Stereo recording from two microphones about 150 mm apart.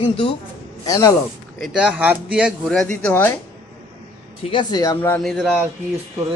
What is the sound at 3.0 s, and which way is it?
Speech, 10° left (ahead or behind).